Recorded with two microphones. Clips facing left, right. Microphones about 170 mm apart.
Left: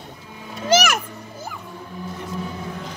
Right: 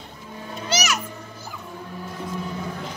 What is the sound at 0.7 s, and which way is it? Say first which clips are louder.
Music: left 8 dB; 55° left (ahead or behind).